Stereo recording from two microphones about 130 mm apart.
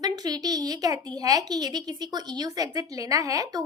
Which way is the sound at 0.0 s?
30° right (ahead or behind).